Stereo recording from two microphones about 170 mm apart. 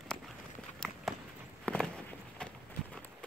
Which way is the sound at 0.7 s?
Centre (ahead or behind).